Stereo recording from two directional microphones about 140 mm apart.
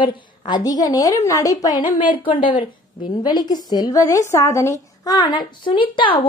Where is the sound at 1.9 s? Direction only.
40° left (ahead or behind).